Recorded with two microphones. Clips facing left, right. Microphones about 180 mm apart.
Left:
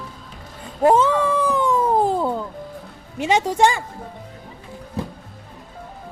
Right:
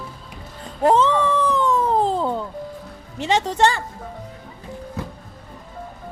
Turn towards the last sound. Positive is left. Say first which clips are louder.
# left 3 dB
turn(degrees=30)  # may be behind; listen again after turning